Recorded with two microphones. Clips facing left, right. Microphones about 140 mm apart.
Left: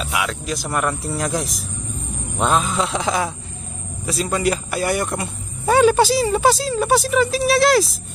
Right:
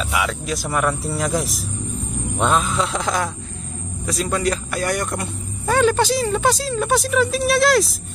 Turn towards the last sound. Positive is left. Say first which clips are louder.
# left 1 dB
turn(degrees=0)  # may be behind; listen again after turning